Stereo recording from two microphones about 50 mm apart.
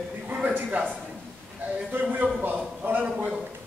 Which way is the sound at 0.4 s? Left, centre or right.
Right.